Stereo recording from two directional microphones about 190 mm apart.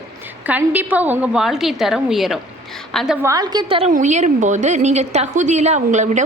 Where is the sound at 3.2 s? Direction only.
15° right (ahead or behind).